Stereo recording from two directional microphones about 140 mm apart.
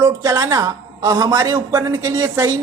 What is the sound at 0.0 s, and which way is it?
Speech, 25° right (ahead or behind).